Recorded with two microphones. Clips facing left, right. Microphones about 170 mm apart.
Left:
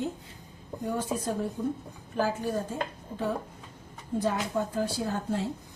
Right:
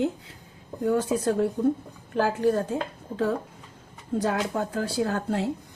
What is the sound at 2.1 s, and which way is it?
A woman's voice, 70° right (ahead or behind).